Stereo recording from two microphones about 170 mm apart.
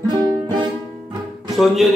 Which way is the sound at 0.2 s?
25° right (ahead or behind).